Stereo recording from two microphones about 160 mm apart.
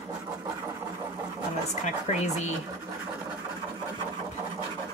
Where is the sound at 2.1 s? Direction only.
40° left (ahead or behind).